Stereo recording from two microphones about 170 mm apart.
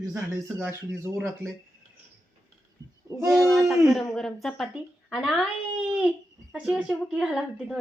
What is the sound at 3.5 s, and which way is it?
Speech, centre (ahead or behind).